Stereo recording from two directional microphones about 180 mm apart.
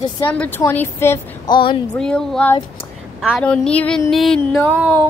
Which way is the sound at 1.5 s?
25° left (ahead or behind).